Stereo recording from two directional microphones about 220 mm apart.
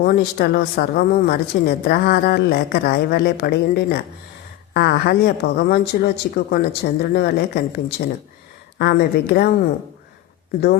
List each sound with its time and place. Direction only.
0.0 s a woman's voice: 45° left (ahead or behind)